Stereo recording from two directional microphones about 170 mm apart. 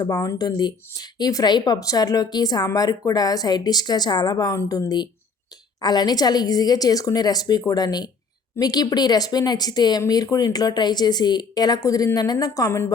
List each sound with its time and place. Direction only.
0.0 s speech: 25° left (ahead or behind)